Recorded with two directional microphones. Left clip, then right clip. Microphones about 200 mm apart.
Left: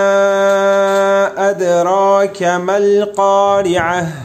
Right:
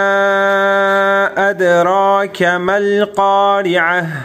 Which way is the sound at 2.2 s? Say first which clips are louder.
Even; 20° right (ahead or behind).